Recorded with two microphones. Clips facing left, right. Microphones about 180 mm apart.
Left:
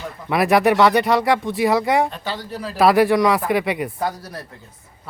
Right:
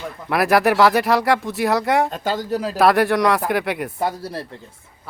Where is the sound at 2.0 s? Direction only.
45° right (ahead or behind).